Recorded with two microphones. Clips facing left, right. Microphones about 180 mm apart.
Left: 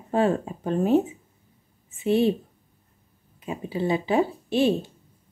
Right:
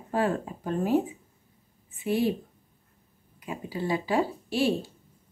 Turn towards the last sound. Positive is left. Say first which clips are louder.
# left 4 dB
turn(degrees=20)  # may be behind; listen again after turning